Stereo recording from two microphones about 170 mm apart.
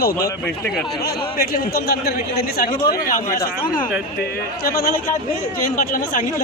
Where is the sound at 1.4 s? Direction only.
65° left (ahead or behind).